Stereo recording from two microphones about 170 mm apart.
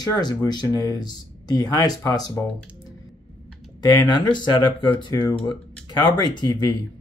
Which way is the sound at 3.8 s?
20° left (ahead or behind).